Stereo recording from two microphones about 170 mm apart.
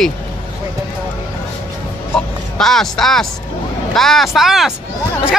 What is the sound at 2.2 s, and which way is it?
Speech, 5° left (ahead or behind).